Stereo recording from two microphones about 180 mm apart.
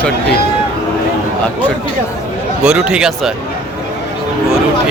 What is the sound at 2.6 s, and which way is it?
Speech, 5° right (ahead or behind).